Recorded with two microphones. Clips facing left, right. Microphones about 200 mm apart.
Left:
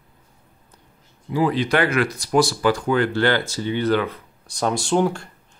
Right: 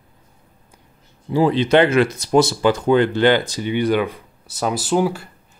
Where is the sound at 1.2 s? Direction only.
30° right (ahead or behind).